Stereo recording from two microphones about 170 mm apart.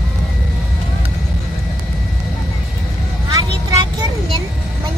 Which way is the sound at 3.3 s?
20° right (ahead or behind).